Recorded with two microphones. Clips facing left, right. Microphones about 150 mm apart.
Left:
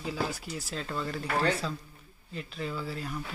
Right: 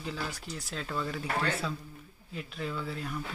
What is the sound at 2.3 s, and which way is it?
Speech, centre (ahead or behind).